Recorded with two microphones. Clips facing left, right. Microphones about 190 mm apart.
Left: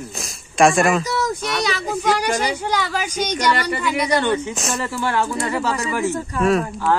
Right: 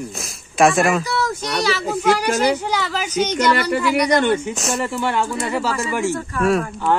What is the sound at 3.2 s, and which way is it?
Speech, 5° right (ahead or behind).